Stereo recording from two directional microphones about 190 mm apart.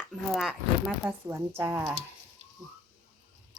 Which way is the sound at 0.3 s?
Centre (ahead or behind).